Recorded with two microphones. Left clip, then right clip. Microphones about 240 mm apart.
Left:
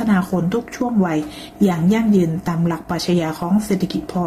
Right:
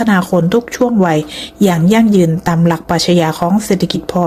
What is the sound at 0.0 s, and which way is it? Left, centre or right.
A woman's voice, right.